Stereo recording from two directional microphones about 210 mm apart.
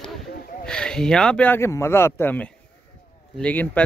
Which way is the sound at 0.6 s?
5° left (ahead or behind).